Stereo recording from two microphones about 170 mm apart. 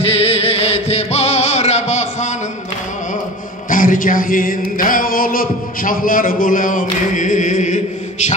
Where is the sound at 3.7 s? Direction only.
50° left (ahead or behind).